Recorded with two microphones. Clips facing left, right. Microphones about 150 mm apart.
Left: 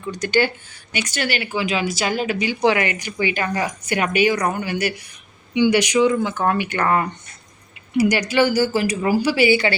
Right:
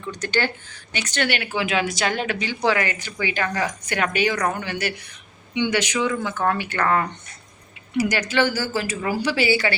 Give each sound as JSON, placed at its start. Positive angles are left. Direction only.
{"t": 0.1, "sound": "speech", "side_deg": 10}
{"t": 8.1, "sound": "speech", "side_deg": 10}